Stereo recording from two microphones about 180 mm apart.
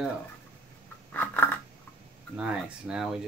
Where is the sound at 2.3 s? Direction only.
5° right (ahead or behind).